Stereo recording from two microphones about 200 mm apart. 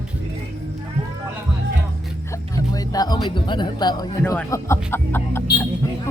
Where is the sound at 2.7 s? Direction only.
20° left (ahead or behind).